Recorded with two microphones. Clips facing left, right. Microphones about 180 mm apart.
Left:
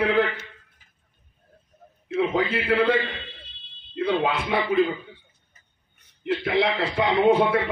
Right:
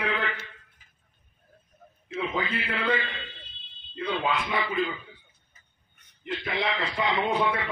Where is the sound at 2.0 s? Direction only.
65° left (ahead or behind).